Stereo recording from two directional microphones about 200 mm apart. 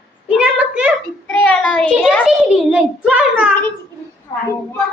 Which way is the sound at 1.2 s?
5° left (ahead or behind).